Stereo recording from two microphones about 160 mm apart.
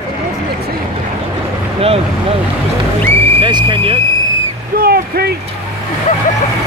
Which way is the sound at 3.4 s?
30° right (ahead or behind).